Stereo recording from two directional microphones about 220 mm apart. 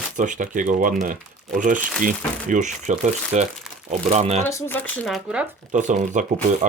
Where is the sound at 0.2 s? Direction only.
35° right (ahead or behind).